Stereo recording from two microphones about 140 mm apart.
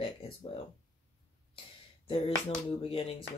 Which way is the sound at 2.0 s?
40° left (ahead or behind).